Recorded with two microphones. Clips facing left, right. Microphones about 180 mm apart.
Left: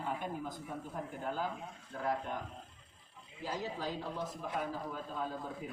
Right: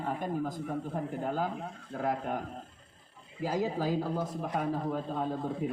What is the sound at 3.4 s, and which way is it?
Speech, 50° right (ahead or behind).